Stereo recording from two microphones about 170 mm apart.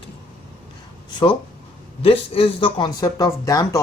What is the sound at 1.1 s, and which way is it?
A man's voice, 30° left (ahead or behind).